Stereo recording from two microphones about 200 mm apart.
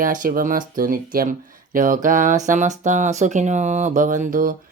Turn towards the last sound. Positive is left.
turn(degrees=-45)  # may be behind; listen again after turning